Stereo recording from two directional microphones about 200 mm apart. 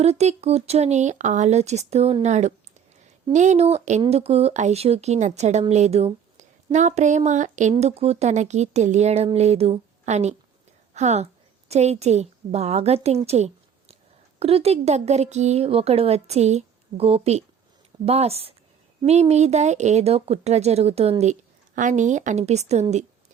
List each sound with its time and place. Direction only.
0.0 s a woman's voice: 35° right (ahead or behind)